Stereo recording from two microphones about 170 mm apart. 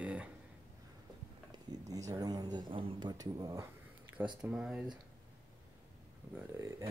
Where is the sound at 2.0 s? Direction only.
20° right (ahead or behind).